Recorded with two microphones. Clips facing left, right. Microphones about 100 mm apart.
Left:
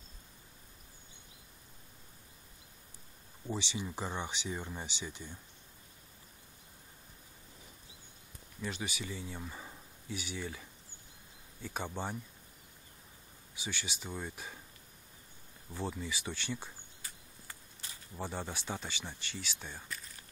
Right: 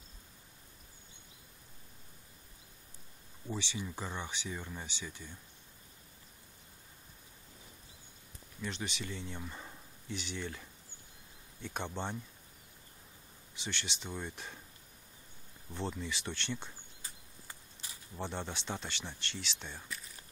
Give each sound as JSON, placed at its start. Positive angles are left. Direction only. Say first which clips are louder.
{"t": 3.5, "sound": "speech", "louder": "left 1 dB", "side_deg": 20}
{"t": 8.5, "sound": "speech", "louder": "left 1 dB", "side_deg": 5}
{"t": 13.6, "sound": "speech", "louder": "even", "side_deg": 5}
{"t": 15.7, "sound": "speech", "louder": "even", "side_deg": 5}
{"t": 18.1, "sound": "speech", "louder": "even", "side_deg": 5}